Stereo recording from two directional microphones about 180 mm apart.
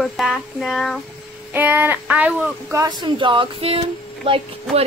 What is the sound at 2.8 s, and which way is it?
A woman's voice, 25° right (ahead or behind).